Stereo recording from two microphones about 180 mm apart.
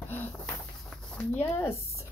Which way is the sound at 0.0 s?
10° left (ahead or behind).